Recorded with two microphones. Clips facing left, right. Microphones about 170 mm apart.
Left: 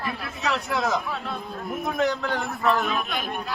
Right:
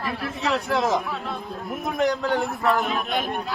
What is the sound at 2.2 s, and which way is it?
Speech, 15° right (ahead or behind).